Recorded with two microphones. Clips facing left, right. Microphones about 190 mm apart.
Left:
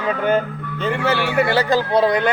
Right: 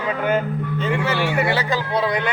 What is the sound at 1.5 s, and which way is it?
Speech, 35° left (ahead or behind).